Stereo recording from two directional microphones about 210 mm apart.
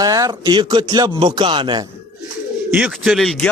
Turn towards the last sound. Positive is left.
turn(degrees=0)  # may be behind; listen again after turning